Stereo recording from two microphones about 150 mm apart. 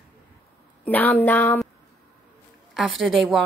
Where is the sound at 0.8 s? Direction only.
10° left (ahead or behind).